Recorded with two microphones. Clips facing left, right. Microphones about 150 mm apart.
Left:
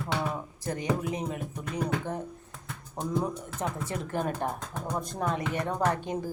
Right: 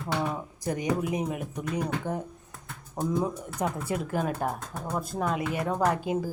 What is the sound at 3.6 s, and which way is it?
Speech, 10° right (ahead or behind).